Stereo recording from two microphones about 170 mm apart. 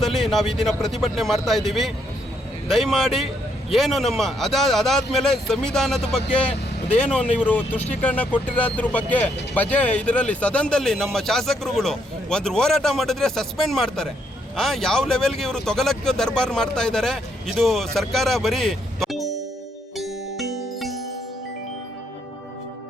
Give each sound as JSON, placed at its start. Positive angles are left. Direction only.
{"t": 0.0, "sound": "speech", "side_deg": 0}
{"t": 20.0, "sound": "music", "side_deg": 0}